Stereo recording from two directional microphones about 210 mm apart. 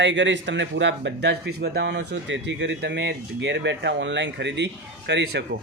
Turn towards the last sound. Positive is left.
turn(degrees=-55)  # may be behind; listen again after turning